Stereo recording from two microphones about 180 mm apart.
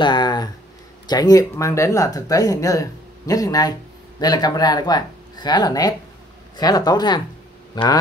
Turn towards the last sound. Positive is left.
turn(degrees=25)  # may be behind; listen again after turning